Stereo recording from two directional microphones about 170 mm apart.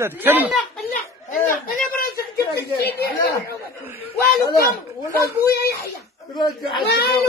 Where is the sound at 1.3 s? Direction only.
55° left (ahead or behind).